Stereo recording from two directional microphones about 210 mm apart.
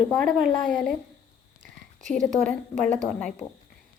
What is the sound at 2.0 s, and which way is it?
A woman's voice, 5° left (ahead or behind).